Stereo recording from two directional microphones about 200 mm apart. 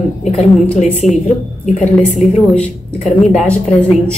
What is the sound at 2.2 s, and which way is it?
Speech, 5° left (ahead or behind).